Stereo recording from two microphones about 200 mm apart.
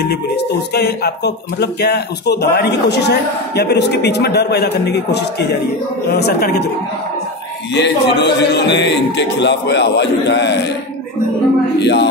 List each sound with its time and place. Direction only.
0.1 s speech: 55° left (ahead or behind)
7.7 s speech: 60° left (ahead or behind)
11.8 s speech: 60° left (ahead or behind)